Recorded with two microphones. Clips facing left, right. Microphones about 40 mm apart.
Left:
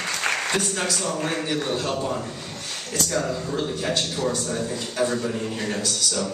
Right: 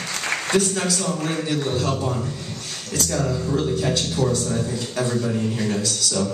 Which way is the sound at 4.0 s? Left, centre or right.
Left.